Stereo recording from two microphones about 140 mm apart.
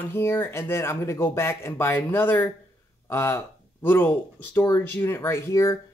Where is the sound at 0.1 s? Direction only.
15° left (ahead or behind).